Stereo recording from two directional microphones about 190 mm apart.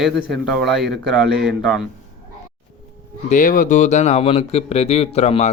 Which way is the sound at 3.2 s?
40° left (ahead or behind).